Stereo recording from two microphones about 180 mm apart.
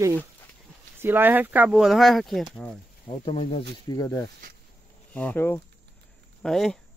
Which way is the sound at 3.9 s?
15° left (ahead or behind).